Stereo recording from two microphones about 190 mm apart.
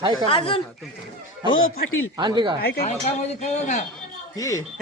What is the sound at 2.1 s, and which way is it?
Speech, 25° right (ahead or behind).